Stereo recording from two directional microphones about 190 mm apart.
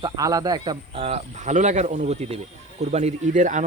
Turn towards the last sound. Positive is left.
turn(degrees=-40)  # may be behind; listen again after turning